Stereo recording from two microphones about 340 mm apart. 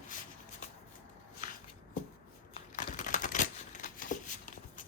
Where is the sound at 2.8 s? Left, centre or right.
Left.